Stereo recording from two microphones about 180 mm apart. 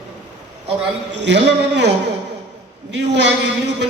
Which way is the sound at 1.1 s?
75° right (ahead or behind).